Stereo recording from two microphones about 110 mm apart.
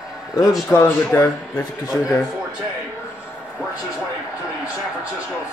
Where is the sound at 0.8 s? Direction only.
20° left (ahead or behind).